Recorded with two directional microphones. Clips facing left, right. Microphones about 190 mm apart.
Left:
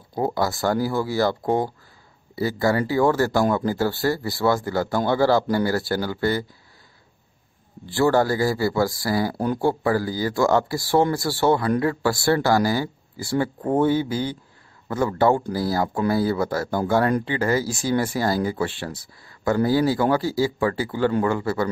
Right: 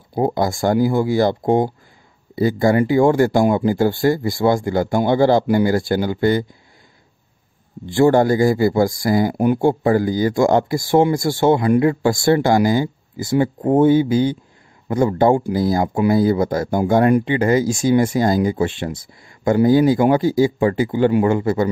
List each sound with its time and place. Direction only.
0.1 s speech: 20° right (ahead or behind)
7.8 s speech: 20° right (ahead or behind)